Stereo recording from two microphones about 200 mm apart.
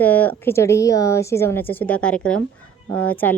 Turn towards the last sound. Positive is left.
turn(degrees=10)  # may be behind; listen again after turning